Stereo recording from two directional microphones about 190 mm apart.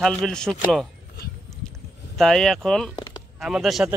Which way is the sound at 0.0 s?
5° left (ahead or behind).